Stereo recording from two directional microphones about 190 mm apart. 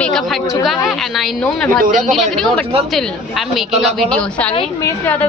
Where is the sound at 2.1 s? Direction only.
Centre (ahead or behind).